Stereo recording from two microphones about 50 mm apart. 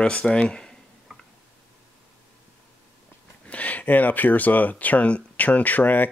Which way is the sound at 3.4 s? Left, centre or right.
Left.